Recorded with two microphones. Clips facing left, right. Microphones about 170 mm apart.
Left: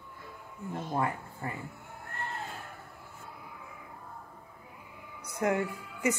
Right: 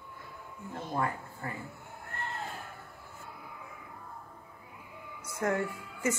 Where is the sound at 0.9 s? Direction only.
20° left (ahead or behind).